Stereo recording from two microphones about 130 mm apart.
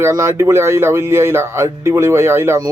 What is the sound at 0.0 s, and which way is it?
A man's voice, 20° right (ahead or behind).